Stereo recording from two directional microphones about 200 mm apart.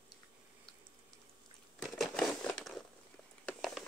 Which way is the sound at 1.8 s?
Centre (ahead or behind).